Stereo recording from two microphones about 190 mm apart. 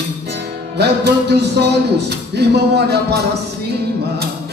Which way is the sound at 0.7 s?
60° right (ahead or behind).